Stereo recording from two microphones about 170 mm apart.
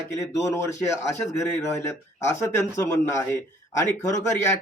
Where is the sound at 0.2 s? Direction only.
15° left (ahead or behind).